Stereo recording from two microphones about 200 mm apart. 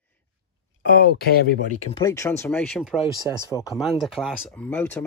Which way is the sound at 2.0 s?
15° left (ahead or behind).